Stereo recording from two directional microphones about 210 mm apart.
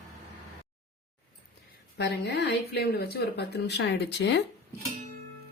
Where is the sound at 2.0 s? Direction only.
55° left (ahead or behind).